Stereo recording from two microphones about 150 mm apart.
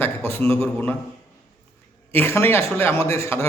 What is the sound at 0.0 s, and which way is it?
Speech, 15° left (ahead or behind).